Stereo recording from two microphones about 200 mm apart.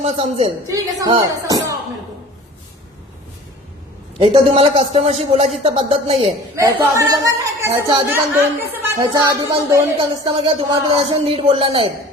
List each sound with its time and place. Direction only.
0.0 s speech: 35° right (ahead or behind)
0.7 s speech: 20° right (ahead or behind)
4.2 s speech: 30° right (ahead or behind)
6.6 s a woman's voice: 15° right (ahead or behind)
9.7 s speech: 25° right (ahead or behind)